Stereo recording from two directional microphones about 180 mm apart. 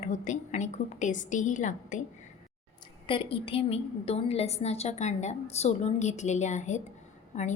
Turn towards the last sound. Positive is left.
turn(degrees=40)  # may be behind; listen again after turning